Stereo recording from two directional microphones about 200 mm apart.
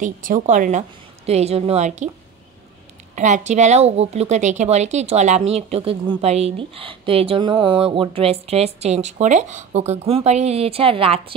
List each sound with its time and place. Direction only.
0.0 s a woman's voice: 40° right (ahead or behind)
3.2 s a woman's voice: 35° right (ahead or behind)